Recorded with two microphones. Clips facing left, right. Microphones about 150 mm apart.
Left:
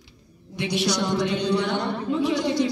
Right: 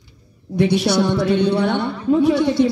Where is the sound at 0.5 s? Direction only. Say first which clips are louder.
Right 8 dB; 45° right (ahead or behind).